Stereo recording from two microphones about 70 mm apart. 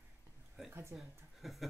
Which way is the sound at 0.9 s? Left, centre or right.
Centre.